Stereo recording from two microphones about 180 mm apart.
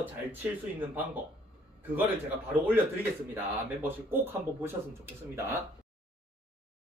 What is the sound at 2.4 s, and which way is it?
Speech, 10° right (ahead or behind).